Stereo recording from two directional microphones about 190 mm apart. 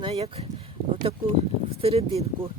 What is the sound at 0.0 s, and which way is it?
Speech, 30° right (ahead or behind).